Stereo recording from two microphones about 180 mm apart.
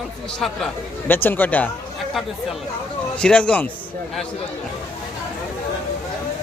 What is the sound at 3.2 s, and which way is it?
Speech, 5° left (ahead or behind).